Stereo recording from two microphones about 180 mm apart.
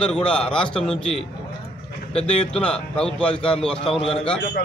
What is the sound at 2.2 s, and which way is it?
A man's voice, 5° left (ahead or behind).